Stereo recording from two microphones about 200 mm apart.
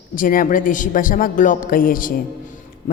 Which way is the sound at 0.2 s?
45° left (ahead or behind).